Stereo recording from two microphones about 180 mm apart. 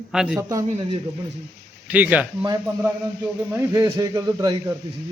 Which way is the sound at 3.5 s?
20° right (ahead or behind).